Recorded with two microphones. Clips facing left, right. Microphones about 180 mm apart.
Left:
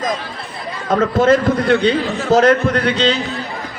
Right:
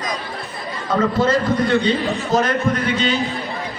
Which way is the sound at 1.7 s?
70° left (ahead or behind).